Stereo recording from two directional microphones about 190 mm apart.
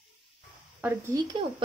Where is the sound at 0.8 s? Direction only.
15° right (ahead or behind).